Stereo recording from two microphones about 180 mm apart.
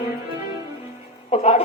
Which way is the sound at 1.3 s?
35° left (ahead or behind).